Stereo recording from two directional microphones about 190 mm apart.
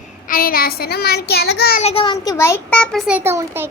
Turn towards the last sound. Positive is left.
turn(degrees=-15)  # may be behind; listen again after turning